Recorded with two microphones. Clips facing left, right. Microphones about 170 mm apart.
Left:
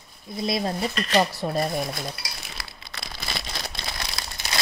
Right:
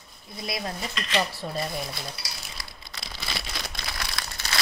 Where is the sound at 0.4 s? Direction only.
25° left (ahead or behind).